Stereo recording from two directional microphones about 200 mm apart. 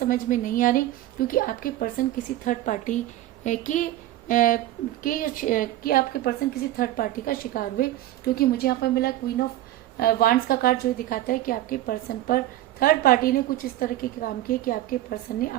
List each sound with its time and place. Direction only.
0.0 s a woman's voice: 45° left (ahead or behind)